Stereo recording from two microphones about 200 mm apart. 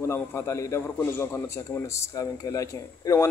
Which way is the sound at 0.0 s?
10° left (ahead or behind).